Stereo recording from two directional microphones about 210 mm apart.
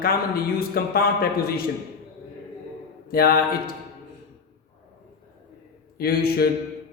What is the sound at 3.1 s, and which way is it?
Speech, 45° left (ahead or behind).